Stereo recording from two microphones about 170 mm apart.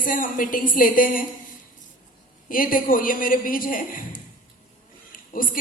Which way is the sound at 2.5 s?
55° left (ahead or behind).